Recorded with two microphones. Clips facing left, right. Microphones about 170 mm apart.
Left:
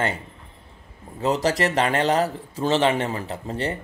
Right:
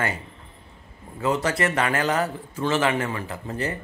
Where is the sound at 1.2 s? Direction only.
35° left (ahead or behind).